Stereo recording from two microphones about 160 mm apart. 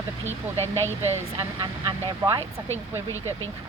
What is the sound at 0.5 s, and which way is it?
Speech, 15° left (ahead or behind).